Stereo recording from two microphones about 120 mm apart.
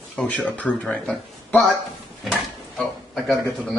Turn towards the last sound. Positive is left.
turn(degrees=0)  # may be behind; listen again after turning